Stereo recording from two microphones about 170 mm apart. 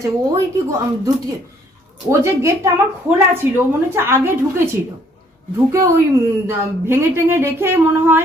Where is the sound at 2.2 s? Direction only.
15° right (ahead or behind).